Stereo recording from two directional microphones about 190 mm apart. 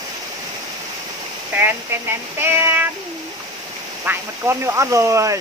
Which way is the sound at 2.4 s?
10° right (ahead or behind).